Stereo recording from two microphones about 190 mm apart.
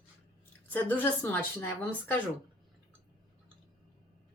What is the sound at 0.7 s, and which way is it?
A woman's voice, 10° left (ahead or behind).